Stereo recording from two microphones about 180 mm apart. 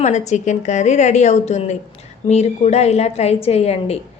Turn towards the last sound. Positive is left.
turn(degrees=35)  # may be behind; listen again after turning